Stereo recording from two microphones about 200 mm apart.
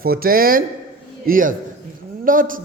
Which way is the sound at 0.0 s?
50° right (ahead or behind).